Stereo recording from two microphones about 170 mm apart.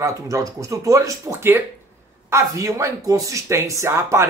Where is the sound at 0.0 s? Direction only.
20° right (ahead or behind).